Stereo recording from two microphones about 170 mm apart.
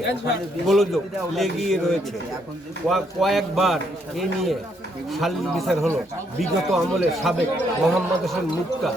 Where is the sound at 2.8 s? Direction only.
Centre (ahead or behind).